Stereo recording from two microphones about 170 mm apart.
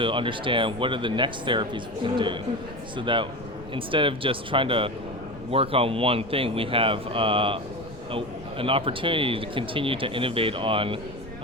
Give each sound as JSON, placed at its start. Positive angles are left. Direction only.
{"t": 0.0, "sound": "speech", "side_deg": -30}